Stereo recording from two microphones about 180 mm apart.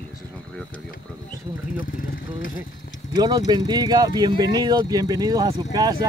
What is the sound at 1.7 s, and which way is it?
Speech, 50° left (ahead or behind).